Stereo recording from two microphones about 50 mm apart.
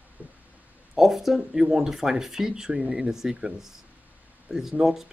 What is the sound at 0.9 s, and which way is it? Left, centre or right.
Speech, centre.